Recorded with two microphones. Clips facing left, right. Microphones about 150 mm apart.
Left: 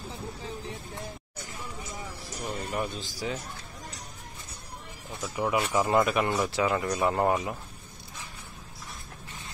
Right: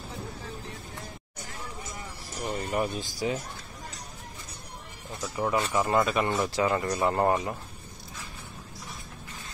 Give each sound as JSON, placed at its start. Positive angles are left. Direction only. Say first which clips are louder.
{"t": 2.4, "sound": "speech", "louder": "right 3 dB", "side_deg": -5}
{"t": 5.3, "sound": "speech", "louder": "even", "side_deg": 10}